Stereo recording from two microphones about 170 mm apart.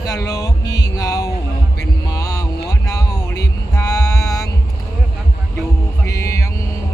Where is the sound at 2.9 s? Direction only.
20° left (ahead or behind).